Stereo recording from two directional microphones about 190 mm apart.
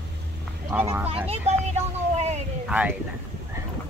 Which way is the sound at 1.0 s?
30° right (ahead or behind).